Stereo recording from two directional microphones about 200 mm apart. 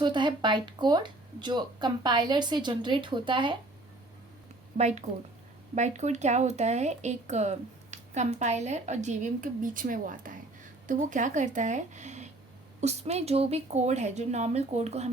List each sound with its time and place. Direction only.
0.0 s speech: 25° right (ahead or behind)
4.8 s speech: 35° right (ahead or behind)